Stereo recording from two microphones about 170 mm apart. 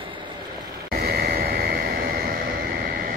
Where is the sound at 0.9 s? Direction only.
65° right (ahead or behind).